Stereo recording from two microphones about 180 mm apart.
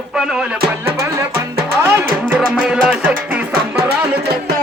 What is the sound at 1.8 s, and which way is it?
Speech, 10° right (ahead or behind).